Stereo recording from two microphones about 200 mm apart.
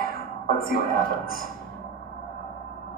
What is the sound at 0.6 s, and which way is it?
Speech, 45° left (ahead or behind).